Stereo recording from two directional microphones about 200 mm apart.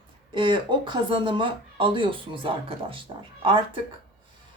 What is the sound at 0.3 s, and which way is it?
Speech, 25° right (ahead or behind).